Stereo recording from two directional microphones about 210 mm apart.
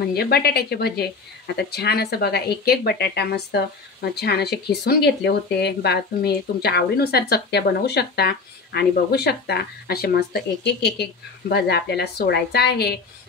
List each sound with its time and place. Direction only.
0.1 s speech: 50° left (ahead or behind)